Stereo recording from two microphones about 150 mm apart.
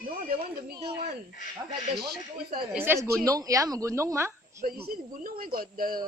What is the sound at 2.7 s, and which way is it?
A woman's voice, 15° right (ahead or behind).